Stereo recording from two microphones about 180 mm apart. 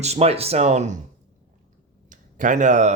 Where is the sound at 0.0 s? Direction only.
35° right (ahead or behind).